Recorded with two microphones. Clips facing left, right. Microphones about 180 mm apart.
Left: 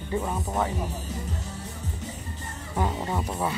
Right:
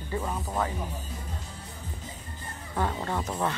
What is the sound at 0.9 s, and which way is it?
Music, 80° left.